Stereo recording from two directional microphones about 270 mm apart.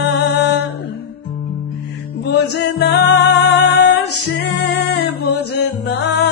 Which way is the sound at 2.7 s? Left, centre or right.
Left.